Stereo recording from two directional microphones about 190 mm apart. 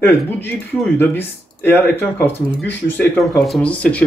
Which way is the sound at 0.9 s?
10° left (ahead or behind).